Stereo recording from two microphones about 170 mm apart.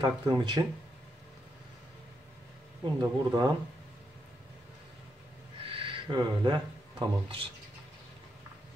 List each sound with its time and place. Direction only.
0.0 s speech: 25° right (ahead or behind)
2.8 s speech: 25° right (ahead or behind)
5.6 s a sound: 30° right (ahead or behind)
7.0 s speech: 30° right (ahead or behind)